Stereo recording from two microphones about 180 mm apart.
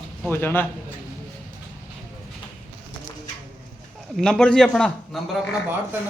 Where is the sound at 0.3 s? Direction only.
10° left (ahead or behind).